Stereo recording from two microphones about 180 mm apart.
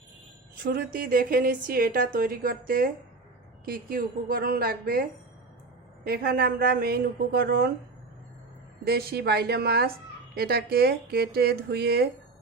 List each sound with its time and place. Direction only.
0.6 s a woman's voice: 60° right (ahead or behind)
6.1 s speech: 55° right (ahead or behind)
8.8 s speech: 60° right (ahead or behind)